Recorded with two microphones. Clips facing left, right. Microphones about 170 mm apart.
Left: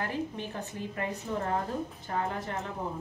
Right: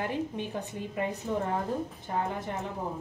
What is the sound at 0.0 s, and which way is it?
A woman's voice, 15° right (ahead or behind).